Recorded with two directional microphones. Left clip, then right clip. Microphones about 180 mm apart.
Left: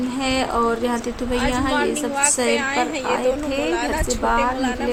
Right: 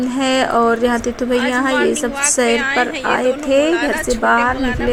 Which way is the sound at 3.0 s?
35° right (ahead or behind).